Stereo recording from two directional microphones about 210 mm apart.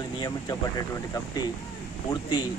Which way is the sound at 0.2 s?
15° left (ahead or behind).